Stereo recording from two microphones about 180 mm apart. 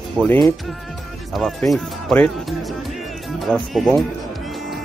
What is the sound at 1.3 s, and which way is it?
Speech, centre (ahead or behind).